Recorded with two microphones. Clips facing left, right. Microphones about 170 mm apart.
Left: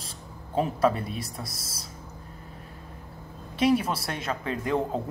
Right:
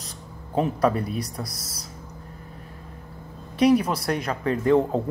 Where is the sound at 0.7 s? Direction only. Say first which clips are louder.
Right 2 dB; 25° left (ahead or behind).